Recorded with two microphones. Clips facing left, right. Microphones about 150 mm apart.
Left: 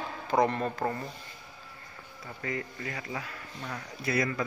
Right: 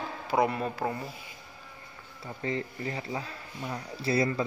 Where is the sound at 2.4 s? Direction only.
25° right (ahead or behind).